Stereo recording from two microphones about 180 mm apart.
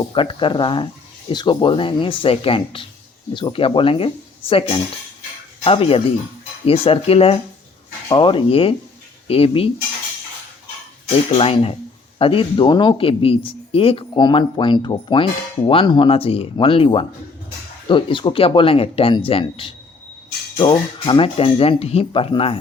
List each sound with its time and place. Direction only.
0.0 s speech: 30° left (ahead or behind)
11.3 s speech: 30° left (ahead or behind)